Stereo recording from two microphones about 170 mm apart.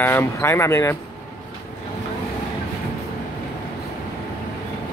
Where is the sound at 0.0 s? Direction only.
15° left (ahead or behind).